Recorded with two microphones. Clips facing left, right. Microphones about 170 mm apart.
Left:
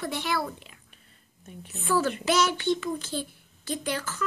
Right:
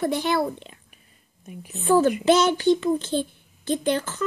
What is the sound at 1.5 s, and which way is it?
Speech, 10° right (ahead or behind).